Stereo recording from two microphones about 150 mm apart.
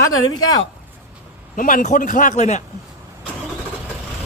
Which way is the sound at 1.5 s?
65° left (ahead or behind).